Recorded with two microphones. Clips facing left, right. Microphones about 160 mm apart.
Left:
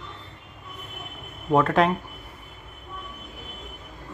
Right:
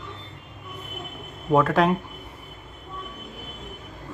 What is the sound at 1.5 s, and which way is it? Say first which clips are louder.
Speech: right 1 dB; centre (ahead or behind).